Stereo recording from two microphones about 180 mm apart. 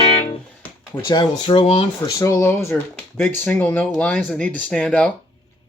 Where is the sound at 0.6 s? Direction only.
15° left (ahead or behind); by 2.1 s 30° left (ahead or behind).